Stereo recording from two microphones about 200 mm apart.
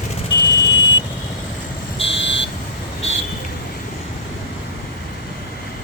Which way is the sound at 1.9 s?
30° left (ahead or behind).